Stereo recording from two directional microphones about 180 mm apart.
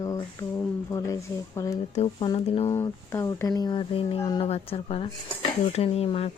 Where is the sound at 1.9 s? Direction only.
40° left (ahead or behind).